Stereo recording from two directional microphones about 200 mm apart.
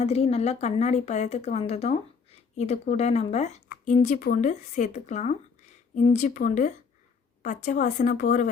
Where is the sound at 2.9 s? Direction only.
35° left (ahead or behind).